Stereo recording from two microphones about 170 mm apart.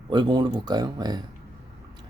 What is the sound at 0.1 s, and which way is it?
Speech, 25° right (ahead or behind).